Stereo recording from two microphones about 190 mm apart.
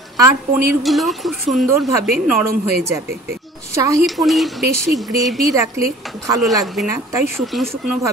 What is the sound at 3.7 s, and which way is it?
Speech, 15° right (ahead or behind).